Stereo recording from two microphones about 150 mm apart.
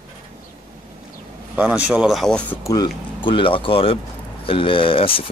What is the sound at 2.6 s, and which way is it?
Speech, 25° left (ahead or behind).